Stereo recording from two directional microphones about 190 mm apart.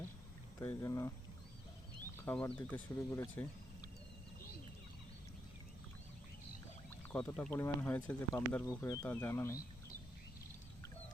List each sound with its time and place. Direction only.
0.6 s speech: 15° left (ahead or behind)
2.2 s speech: 10° left (ahead or behind)
7.1 s speech: 5° left (ahead or behind)